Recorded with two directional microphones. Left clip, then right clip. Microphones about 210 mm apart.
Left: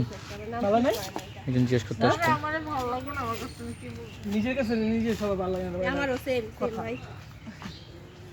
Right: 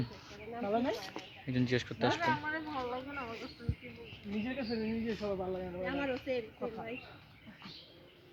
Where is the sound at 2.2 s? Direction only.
25° left (ahead or behind).